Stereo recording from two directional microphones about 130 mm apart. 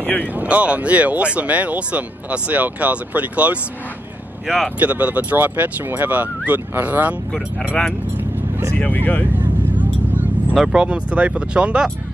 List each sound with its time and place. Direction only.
0.0 s speech: 10° left (ahead or behind)
0.3 s speech: 10° right (ahead or behind)
4.7 s speech: 10° right (ahead or behind)
8.2 s vehicle: 15° right (ahead or behind)
8.7 s speech: 10° left (ahead or behind)
10.5 s speech: 5° right (ahead or behind)